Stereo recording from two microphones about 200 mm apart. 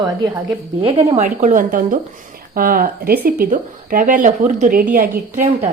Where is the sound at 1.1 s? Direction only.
40° right (ahead or behind).